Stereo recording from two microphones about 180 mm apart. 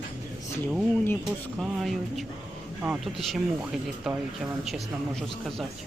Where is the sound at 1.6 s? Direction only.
Centre (ahead or behind).